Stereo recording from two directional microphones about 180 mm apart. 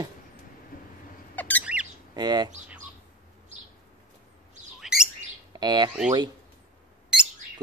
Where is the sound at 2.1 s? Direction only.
25° right (ahead or behind).